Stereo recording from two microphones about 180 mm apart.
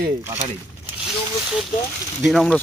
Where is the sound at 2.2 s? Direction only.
Centre (ahead or behind).